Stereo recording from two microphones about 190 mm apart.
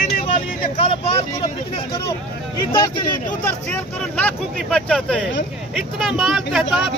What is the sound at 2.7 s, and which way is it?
Speech, 25° left (ahead or behind).